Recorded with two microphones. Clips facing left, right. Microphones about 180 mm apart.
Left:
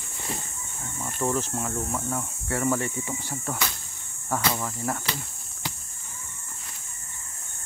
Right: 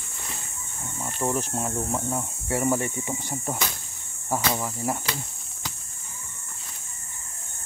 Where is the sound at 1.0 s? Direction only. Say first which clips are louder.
Even; 15° right (ahead or behind).